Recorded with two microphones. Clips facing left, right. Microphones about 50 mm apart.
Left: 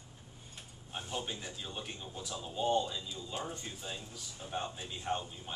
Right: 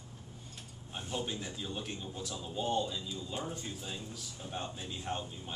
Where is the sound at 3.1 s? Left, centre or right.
Left.